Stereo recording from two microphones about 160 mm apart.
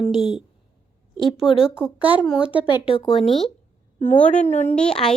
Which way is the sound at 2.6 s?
30° left (ahead or behind).